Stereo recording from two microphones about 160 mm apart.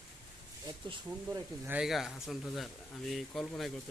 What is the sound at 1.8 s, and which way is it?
Speech, centre (ahead or behind).